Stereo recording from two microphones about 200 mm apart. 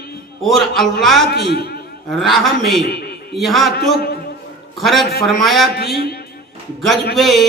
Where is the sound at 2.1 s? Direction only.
Centre (ahead or behind).